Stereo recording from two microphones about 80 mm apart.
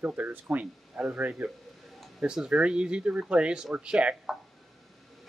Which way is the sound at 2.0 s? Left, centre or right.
Centre.